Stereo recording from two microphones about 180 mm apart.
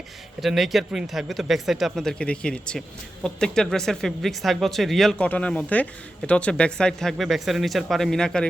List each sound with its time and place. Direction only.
0.4 s speech: centre (ahead or behind)